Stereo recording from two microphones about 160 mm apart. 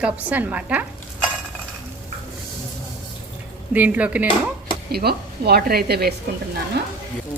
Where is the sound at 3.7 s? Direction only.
10° right (ahead or behind).